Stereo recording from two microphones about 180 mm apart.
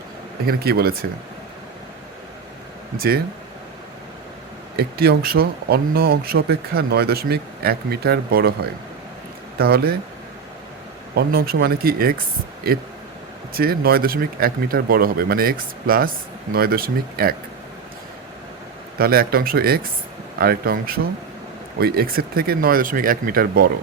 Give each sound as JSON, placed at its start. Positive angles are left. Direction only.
{"t": 0.4, "sound": "speech", "side_deg": -60}
{"t": 4.8, "sound": "speech", "side_deg": -60}
{"t": 9.6, "sound": "speech", "side_deg": -60}
{"t": 11.1, "sound": "speech", "side_deg": -60}
{"t": 18.9, "sound": "speech", "side_deg": -55}